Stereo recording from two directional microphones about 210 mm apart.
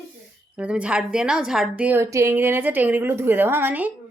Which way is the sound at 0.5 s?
5° right (ahead or behind).